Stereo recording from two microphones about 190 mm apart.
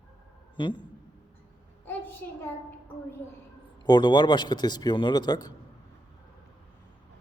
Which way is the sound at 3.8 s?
25° left (ahead or behind).